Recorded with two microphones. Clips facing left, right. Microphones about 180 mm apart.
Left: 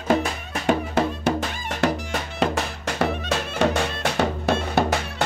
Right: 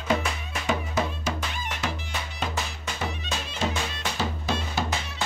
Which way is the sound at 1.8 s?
70° left (ahead or behind).